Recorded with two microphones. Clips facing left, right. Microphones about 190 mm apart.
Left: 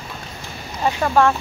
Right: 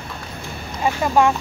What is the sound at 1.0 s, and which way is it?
Speech, 15° right (ahead or behind).